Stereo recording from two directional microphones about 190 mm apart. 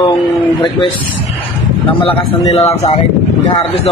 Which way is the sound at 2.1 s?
30° left (ahead or behind).